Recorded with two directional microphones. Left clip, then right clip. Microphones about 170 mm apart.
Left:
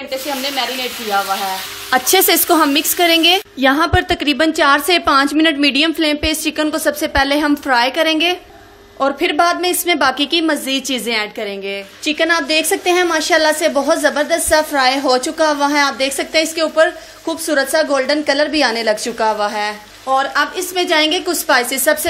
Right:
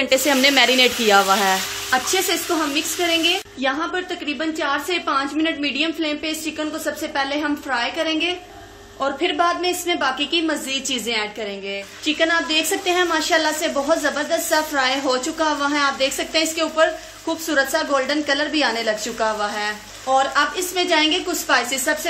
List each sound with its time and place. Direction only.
0.1 s speech: 45° right (ahead or behind)
1.9 s a woman's voice: 55° left (ahead or behind)